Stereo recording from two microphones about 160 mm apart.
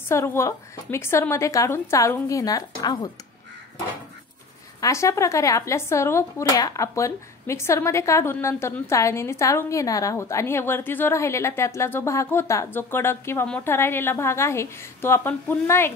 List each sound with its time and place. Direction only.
0.1 s speech: 15° left (ahead or behind)
4.7 s speech: 20° left (ahead or behind)